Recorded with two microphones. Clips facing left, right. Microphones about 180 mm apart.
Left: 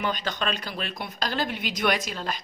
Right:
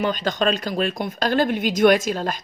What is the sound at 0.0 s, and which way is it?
Speech, 45° right (ahead or behind).